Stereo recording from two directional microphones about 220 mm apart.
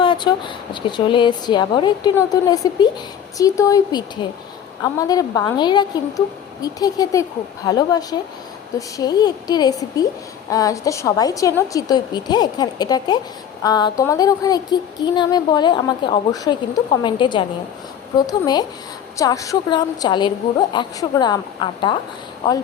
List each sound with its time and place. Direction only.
0.0 s a woman's voice: 20° left (ahead or behind)